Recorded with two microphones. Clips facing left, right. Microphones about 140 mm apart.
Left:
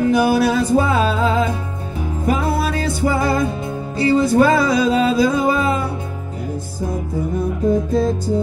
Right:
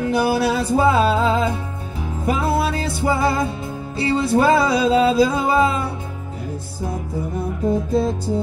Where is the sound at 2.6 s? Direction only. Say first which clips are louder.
Left 2 dB; 30° right (ahead or behind).